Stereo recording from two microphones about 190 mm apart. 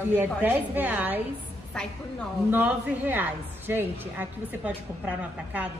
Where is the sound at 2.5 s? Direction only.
10° right (ahead or behind).